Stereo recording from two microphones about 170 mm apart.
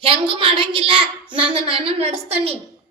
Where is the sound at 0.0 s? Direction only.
30° right (ahead or behind).